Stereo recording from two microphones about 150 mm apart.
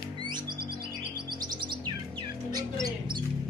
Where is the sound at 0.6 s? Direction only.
90° right.